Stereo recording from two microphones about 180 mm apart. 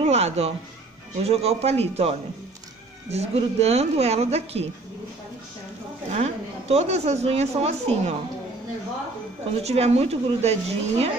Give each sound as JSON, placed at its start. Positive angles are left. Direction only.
{"t": 0.0, "sound": "a woman's voice", "side_deg": -35}
{"t": 6.1, "sound": "a woman's voice", "side_deg": -40}
{"t": 9.6, "sound": "a woman's voice", "side_deg": -35}